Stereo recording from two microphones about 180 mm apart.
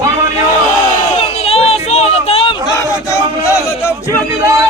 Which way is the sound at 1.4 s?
35° left (ahead or behind).